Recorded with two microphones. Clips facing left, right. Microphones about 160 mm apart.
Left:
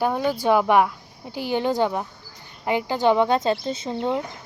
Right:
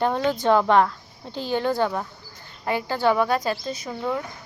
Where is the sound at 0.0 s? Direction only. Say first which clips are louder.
Even; 10° left (ahead or behind).